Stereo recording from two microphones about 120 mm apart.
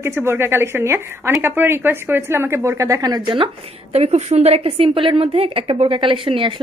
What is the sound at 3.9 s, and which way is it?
A woman's voice, 60° right (ahead or behind).